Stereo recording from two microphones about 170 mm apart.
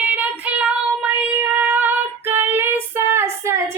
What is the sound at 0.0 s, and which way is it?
Child singing, 10° right (ahead or behind).